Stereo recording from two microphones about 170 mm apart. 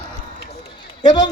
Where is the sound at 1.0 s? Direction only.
25° left (ahead or behind).